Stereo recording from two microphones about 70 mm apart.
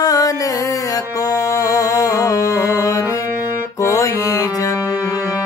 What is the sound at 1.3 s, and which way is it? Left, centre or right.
Music, left.